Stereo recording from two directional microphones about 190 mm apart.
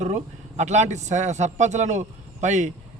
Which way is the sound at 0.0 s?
35° right (ahead or behind).